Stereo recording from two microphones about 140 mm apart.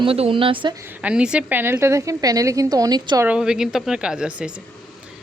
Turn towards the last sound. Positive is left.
turn(degrees=-5)  # may be behind; listen again after turning